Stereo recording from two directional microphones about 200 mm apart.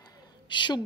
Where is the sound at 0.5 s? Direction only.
25° left (ahead or behind).